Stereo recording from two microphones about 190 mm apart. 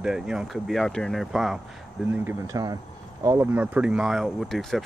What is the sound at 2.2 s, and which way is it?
Speech, 15° right (ahead or behind).